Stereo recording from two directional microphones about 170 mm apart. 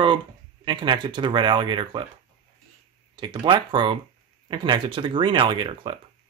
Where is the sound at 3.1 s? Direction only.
25° right (ahead or behind).